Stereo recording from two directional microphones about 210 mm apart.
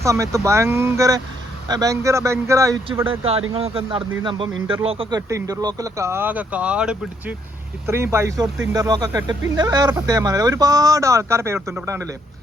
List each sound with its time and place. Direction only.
0.0 s speech: 15° right (ahead or behind)
3.0 s speech: 25° right (ahead or behind)